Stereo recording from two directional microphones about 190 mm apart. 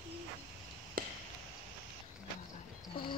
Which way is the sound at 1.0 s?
50° right (ahead or behind).